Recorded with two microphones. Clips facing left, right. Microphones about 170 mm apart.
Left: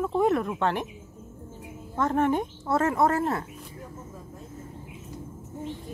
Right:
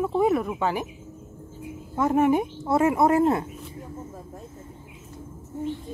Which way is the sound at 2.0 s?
10° right (ahead or behind).